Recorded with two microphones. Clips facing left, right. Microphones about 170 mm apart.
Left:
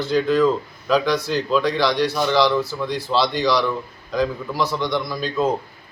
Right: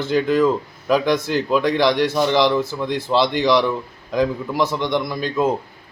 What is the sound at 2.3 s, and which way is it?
Speech, 20° right (ahead or behind).